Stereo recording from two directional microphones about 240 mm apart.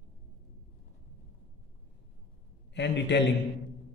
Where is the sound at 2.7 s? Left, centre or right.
Left.